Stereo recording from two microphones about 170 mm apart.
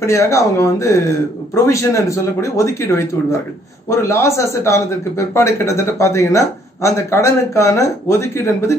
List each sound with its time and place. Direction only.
0.0 s a man's voice: 15° left (ahead or behind)